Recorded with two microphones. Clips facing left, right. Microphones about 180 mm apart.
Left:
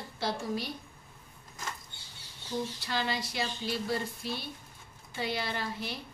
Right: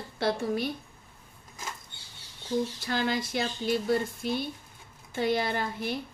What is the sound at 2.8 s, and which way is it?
Speech, 50° right (ahead or behind).